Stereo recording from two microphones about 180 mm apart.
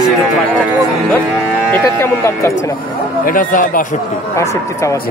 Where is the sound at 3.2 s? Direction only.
50° left (ahead or behind).